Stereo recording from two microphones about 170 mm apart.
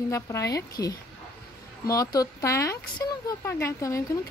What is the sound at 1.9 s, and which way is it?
Speech, 20° left (ahead or behind).